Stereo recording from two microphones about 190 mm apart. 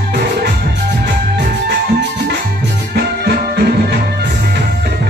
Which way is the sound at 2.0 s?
60° right (ahead or behind).